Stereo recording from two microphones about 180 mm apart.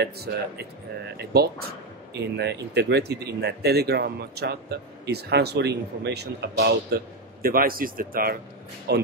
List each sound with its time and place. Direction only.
0.0 s speech: 65° right (ahead or behind)
8.9 s speech: 65° right (ahead or behind)